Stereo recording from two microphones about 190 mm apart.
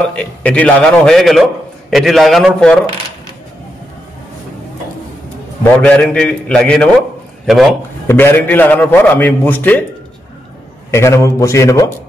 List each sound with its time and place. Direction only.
0.0 s a man's voice: 5° left (ahead or behind)
5.6 s a man's voice: 5° left (ahead or behind)
8.1 s a man's voice: 10° left (ahead or behind)
10.9 s a man's voice: 15° left (ahead or behind)